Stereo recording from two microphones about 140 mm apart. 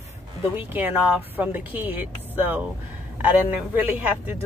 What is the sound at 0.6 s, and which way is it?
A woman's voice, 15° right (ahead or behind).